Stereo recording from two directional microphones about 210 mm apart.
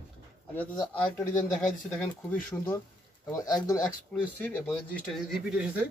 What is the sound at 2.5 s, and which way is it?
Speech, 10° left (ahead or behind).